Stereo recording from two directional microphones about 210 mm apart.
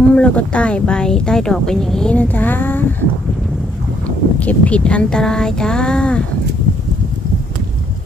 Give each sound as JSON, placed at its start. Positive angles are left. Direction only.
{"t": 0.1, "sound": "speech", "side_deg": 5}
{"t": 4.4, "sound": "speech", "side_deg": 5}